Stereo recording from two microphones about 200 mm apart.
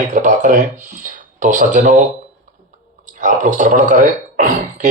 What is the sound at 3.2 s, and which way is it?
Speech, 40° right (ahead or behind).